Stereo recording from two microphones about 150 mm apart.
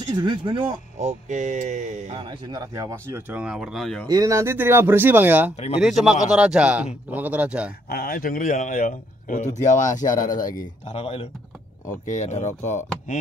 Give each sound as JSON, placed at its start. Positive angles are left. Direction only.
{"t": 0.0, "sound": "speech", "side_deg": -30}
{"t": 0.9, "sound": "speech", "side_deg": -50}
{"t": 2.1, "sound": "speech", "side_deg": -30}
{"t": 4.1, "sound": "a man's voice", "side_deg": -20}
{"t": 7.9, "sound": "speech", "side_deg": 85}
{"t": 11.0, "sound": "speech", "side_deg": 45}
{"t": 11.9, "sound": "speech", "side_deg": 55}